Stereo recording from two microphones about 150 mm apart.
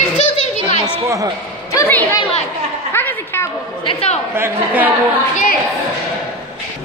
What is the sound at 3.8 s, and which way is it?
Speech, 40° left (ahead or behind).